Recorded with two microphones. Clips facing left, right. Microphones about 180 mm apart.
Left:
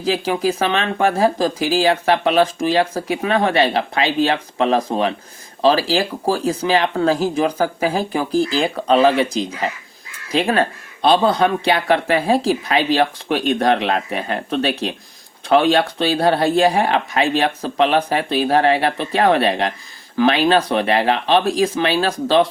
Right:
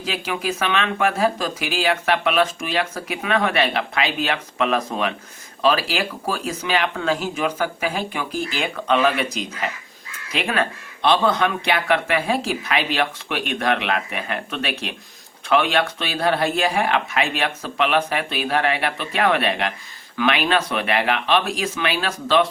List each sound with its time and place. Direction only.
0.0 s speech: 35° left (ahead or behind)